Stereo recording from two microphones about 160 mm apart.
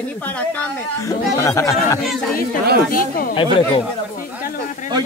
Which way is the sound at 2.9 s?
65° left (ahead or behind).